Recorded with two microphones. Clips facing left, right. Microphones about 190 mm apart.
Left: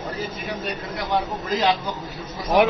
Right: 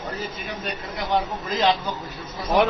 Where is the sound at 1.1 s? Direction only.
Centre (ahead or behind).